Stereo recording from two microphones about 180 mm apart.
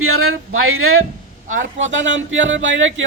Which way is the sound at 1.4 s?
45° right (ahead or behind).